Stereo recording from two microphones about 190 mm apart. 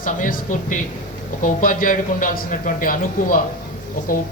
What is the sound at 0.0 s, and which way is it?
Speech, 45° left (ahead or behind).